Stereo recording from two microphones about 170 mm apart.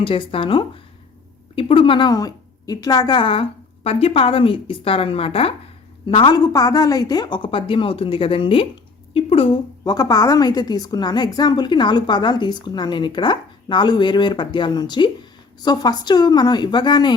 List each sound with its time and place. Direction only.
0.0 s a woman's voice: 30° left (ahead or behind)